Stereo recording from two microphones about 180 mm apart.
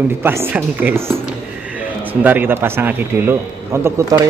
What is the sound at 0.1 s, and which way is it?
Speech, 15° right (ahead or behind).